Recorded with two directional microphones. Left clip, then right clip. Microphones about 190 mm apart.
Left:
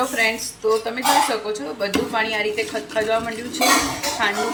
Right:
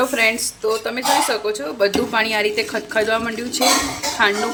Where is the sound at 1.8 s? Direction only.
60° right (ahead or behind).